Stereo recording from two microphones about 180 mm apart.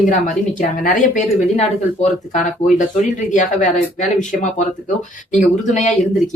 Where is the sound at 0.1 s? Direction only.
50° left (ahead or behind).